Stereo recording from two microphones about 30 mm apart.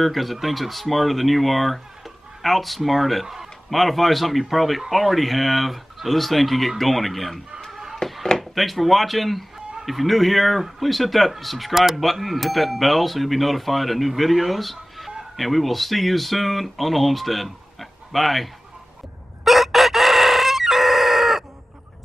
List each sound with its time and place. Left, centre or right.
0.0 s speech: centre
8.0 s chop: centre
8.4 s speech: centre
11.7 s speech: centre
12.0 s speech: centre
19.4 s crowing: centre